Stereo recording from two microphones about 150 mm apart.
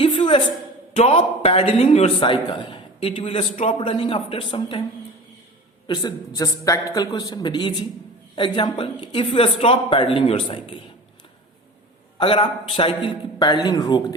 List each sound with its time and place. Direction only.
0.0 s a sound: 40° left (ahead or behind)
0.9 s a man's voice: 40° left (ahead or behind)
5.9 s a man's voice: 25° left (ahead or behind)
12.1 s a man's voice: 35° left (ahead or behind)